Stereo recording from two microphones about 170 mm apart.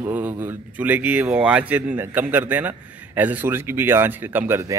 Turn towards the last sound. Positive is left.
turn(degrees=-15)  # may be behind; listen again after turning